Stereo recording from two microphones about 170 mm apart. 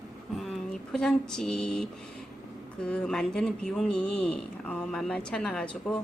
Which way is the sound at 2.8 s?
5° left (ahead or behind).